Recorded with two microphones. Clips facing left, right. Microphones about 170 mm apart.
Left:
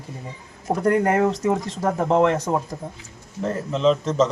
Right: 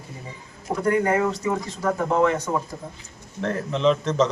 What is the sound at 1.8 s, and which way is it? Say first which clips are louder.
Speech: left 2 dB; 35° left (ahead or behind).